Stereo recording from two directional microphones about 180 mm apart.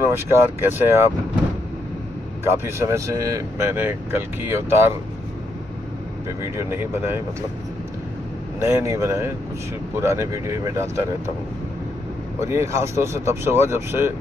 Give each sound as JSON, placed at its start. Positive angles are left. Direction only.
{"t": 0.0, "sound": "speech", "side_deg": -10}
{"t": 2.4, "sound": "speech", "side_deg": -15}
{"t": 6.4, "sound": "speech", "side_deg": -15}
{"t": 8.5, "sound": "speech", "side_deg": -15}
{"t": 12.4, "sound": "speech", "side_deg": -15}